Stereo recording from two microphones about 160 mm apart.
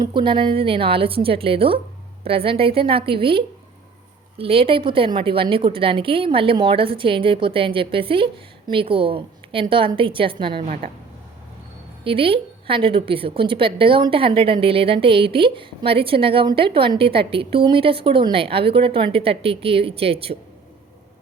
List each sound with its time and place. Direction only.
0.0 s a woman's voice: 30° right (ahead or behind)
10.6 s speech: 50° right (ahead or behind)
12.0 s a woman's voice: 35° right (ahead or behind)